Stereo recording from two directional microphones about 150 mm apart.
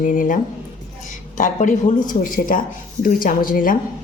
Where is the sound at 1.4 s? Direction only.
55° left (ahead or behind).